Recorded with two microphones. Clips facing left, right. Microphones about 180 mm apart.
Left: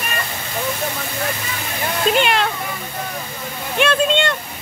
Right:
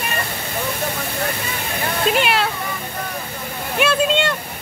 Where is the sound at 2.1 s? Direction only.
5° right (ahead or behind).